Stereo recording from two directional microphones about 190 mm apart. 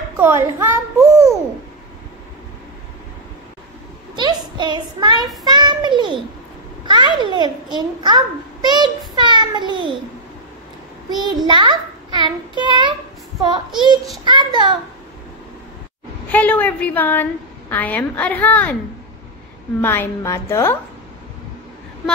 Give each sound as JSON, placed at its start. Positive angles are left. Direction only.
{"t": 0.2, "sound": "a child's voice", "side_deg": -10}
{"t": 4.1, "sound": "a child's voice", "side_deg": -25}
{"t": 11.1, "sound": "a child's voice", "side_deg": -25}
{"t": 14.2, "sound": "a child's voice", "side_deg": -25}
{"t": 16.3, "sound": "a woman's voice", "side_deg": 10}
{"t": 19.8, "sound": "a woman's voice", "side_deg": 10}